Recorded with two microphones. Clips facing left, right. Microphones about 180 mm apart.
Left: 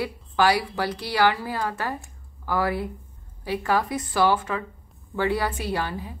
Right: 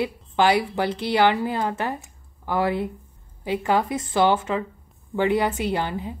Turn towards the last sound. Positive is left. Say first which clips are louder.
# right 3 dB
turn(degrees=-20)  # may be behind; listen again after turning